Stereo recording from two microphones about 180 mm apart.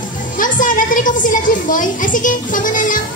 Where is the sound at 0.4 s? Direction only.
45° left (ahead or behind).